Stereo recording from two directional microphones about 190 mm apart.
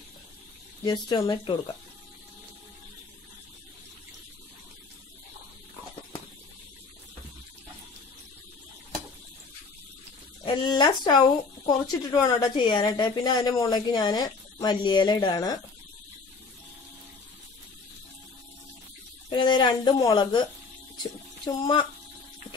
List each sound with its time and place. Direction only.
0.8 s speech: 25° left (ahead or behind)
10.4 s speech: 25° left (ahead or behind)
19.3 s speech: 25° left (ahead or behind)